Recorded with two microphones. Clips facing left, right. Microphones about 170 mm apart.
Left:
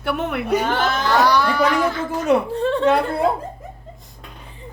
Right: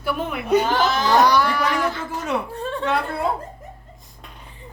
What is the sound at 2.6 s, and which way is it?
Speech, 80° left.